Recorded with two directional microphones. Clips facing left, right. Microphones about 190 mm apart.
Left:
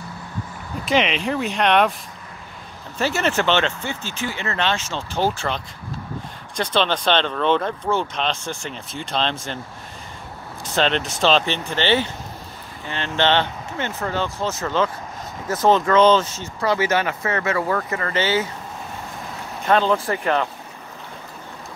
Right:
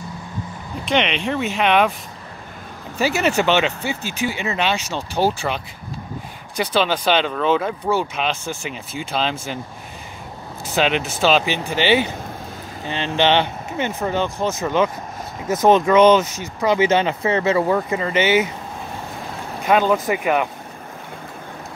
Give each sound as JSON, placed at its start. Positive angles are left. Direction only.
{"t": 0.8, "sound": "speech", "side_deg": 0}
{"t": 3.0, "sound": "speech", "side_deg": -10}
{"t": 10.7, "sound": "speech", "side_deg": -5}
{"t": 19.6, "sound": "speech", "side_deg": -10}